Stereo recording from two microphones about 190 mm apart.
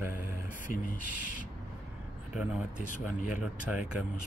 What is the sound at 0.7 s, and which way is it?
Speech, 45° left (ahead or behind).